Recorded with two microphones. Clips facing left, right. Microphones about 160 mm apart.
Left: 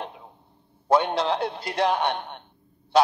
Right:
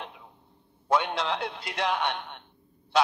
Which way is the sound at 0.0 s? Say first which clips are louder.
Left 5 dB; 40° left (ahead or behind).